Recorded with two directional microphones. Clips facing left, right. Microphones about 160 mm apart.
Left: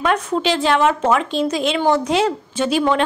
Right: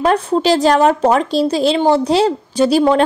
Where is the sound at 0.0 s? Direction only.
35° right (ahead or behind).